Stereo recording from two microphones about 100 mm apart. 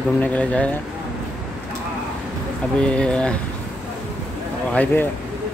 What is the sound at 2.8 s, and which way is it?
Speech, 10° left (ahead or behind).